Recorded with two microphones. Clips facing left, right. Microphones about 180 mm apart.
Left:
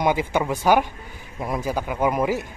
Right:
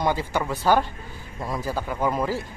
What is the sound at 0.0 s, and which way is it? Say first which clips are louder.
Speech: left 3 dB; 15° left (ahead or behind).